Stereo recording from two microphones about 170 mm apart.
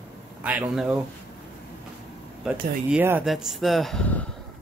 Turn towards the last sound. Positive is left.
turn(degrees=5)  # may be behind; listen again after turning